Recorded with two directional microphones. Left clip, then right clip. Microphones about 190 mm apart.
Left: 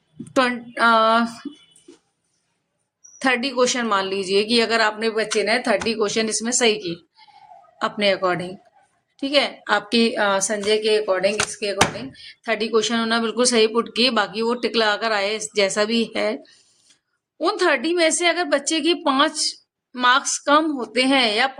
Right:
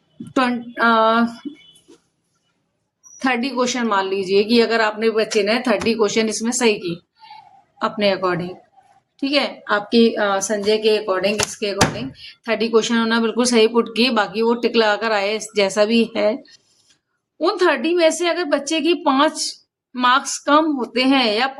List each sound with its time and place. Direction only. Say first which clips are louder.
0.3 s a woman's voice: even; 25° left (ahead or behind)
3.2 s a woman's voice: left 1 dB; 25° left (ahead or behind)